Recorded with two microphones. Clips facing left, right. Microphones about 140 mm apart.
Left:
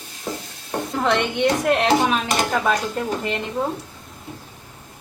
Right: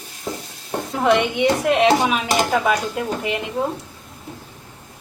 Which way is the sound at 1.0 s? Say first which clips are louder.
Right 3 dB; 5° right (ahead or behind).